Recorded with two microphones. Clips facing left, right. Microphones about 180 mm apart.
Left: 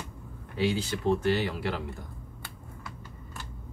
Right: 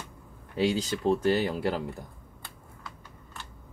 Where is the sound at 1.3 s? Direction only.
40° right (ahead or behind).